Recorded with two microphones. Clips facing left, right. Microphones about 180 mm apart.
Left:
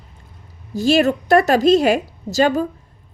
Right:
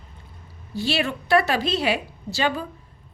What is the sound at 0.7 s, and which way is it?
A woman's voice, 45° left (ahead or behind).